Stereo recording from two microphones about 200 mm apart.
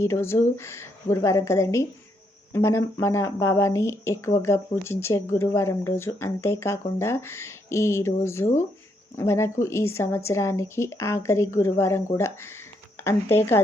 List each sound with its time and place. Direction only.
0.0 s speech: 15° left (ahead or behind)